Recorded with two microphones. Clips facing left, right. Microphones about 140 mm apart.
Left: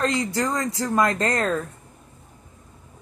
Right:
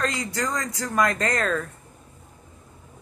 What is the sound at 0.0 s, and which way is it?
Speech, 25° left (ahead or behind).